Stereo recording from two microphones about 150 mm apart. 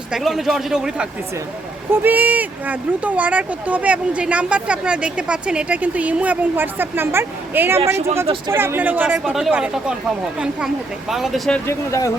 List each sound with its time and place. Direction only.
0.1 s a man's voice: centre (ahead or behind)
11.1 s a man's voice: centre (ahead or behind)
11.7 s speech: 20° left (ahead or behind)